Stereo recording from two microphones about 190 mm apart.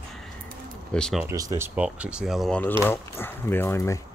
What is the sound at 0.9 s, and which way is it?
Speech, 5° left (ahead or behind).